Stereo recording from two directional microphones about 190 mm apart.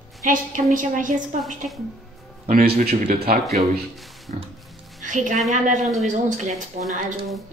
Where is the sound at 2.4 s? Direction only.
50° right (ahead or behind).